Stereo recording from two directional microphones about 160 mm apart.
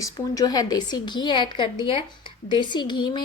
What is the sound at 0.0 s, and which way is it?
A woman's voice, 25° left (ahead or behind).